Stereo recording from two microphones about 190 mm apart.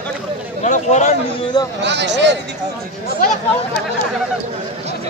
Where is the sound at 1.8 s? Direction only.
65° right (ahead or behind).